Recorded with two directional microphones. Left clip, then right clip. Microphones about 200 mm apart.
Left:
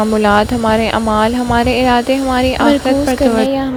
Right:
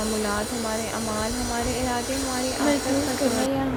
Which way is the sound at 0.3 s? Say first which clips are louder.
Left 15 dB; 55° left (ahead or behind).